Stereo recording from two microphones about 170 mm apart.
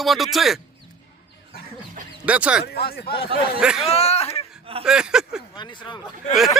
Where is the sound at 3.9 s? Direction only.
40° left (ahead or behind).